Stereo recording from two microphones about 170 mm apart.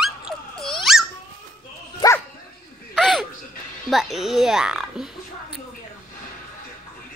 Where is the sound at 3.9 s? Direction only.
Centre (ahead or behind).